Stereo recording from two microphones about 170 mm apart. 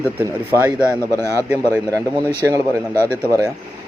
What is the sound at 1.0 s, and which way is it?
Speech, 15° left (ahead or behind).